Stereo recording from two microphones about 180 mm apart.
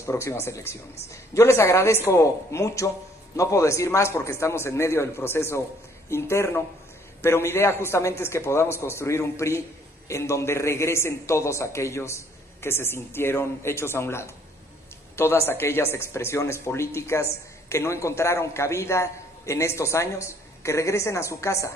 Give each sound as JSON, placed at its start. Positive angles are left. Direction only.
{"t": 0.0, "sound": "speech", "side_deg": 15}